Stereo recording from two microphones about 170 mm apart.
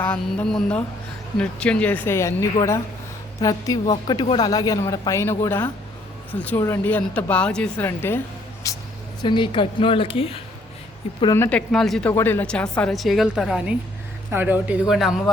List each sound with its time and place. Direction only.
0.0 s speech: 10° left (ahead or behind)
8.7 s a sound: 20° left (ahead or behind)
9.2 s a woman's voice: 30° left (ahead or behind)
11.3 s a woman's voice: 10° left (ahead or behind)